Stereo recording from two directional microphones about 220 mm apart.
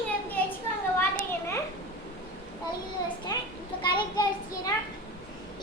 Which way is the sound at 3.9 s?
20° left (ahead or behind).